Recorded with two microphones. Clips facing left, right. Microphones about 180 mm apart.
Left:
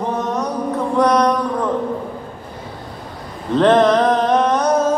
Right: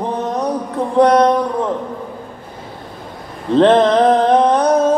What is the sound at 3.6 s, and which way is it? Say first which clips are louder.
Music: right 2 dB; 30° right (ahead or behind).